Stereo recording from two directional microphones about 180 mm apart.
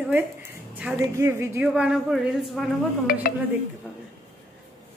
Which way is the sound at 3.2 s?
50° left (ahead or behind).